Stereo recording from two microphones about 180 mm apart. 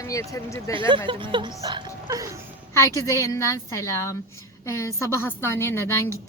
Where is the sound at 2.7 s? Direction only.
15° left (ahead or behind).